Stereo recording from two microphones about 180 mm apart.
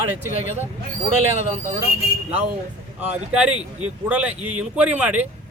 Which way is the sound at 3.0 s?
10° right (ahead or behind).